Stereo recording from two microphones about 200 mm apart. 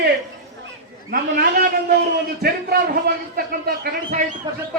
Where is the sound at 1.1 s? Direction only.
50° right (ahead or behind).